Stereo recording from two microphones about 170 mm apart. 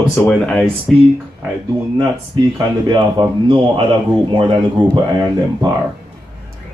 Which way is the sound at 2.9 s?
25° right (ahead or behind).